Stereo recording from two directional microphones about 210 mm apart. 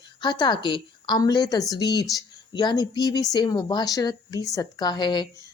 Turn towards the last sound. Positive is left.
turn(degrees=20)  # may be behind; listen again after turning